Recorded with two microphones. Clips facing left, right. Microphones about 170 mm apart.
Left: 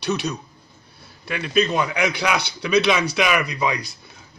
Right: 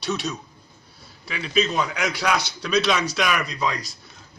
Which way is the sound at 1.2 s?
55° left (ahead or behind).